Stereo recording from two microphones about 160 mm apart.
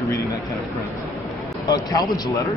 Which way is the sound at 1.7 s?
25° left (ahead or behind).